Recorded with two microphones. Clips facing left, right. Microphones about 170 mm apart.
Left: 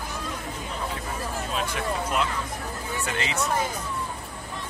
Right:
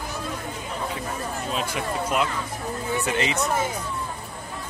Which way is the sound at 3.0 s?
20° right (ahead or behind).